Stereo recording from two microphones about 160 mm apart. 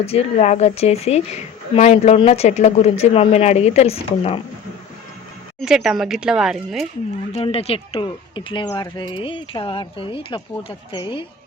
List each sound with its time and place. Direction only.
0.0 s speech: 40° left (ahead or behind)
5.5 s speech: 5° right (ahead or behind)
7.3 s speech: 40° left (ahead or behind)